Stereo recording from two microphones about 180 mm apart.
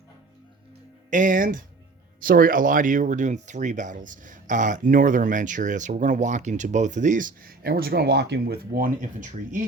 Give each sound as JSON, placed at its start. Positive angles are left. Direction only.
{"t": 1.1, "sound": "speech", "side_deg": -50}